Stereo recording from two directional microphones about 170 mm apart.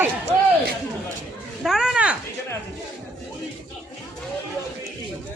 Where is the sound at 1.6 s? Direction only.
Centre (ahead or behind).